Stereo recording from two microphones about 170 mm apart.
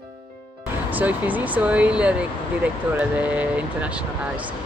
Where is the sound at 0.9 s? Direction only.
10° right (ahead or behind).